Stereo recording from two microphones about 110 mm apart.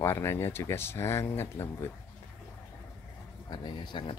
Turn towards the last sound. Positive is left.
turn(degrees=45)  # may be behind; listen again after turning